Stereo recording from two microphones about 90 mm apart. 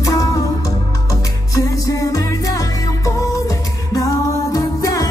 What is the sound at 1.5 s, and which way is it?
Music, 40° left (ahead or behind).